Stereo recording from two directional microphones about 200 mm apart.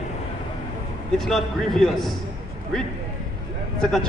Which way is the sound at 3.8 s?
5° left (ahead or behind).